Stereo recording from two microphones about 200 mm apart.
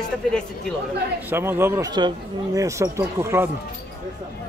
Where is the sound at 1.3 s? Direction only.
10° right (ahead or behind).